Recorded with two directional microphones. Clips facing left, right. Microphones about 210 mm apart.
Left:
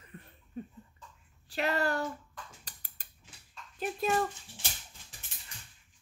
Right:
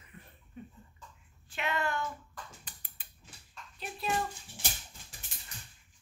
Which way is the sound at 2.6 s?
40° left (ahead or behind).